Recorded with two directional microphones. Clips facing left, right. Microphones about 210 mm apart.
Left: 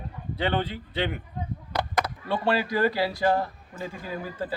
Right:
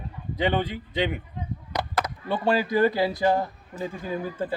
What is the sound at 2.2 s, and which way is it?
A man's voice, 15° right (ahead or behind).